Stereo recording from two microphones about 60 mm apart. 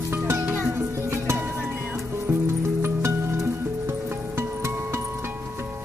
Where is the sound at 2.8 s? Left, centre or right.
Right.